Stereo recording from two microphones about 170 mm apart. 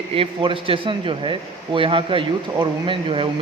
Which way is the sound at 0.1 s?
30° right (ahead or behind).